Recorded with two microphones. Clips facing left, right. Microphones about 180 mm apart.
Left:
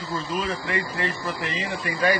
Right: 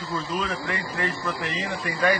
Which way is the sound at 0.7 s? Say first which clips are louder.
Left 1 dB; 20° left (ahead or behind).